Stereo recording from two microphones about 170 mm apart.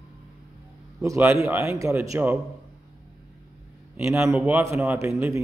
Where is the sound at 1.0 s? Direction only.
15° right (ahead or behind).